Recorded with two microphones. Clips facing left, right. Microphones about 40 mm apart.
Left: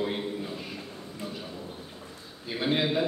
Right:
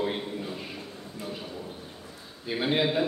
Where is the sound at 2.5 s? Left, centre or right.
Centre.